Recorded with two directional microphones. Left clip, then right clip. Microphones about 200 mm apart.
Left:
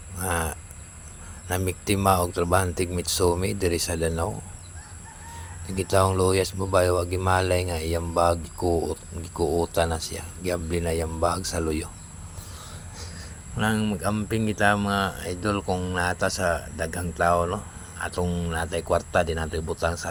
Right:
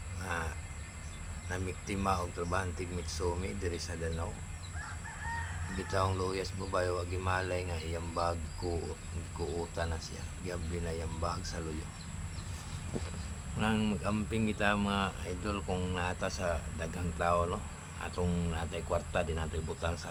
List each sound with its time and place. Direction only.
0.2 s a sound: 40° left (ahead or behind)
1.5 s speech: 45° left (ahead or behind)
5.7 s speech: 40° left (ahead or behind)
13.6 s speech: 30° left (ahead or behind)
18.5 s speech: 30° left (ahead or behind)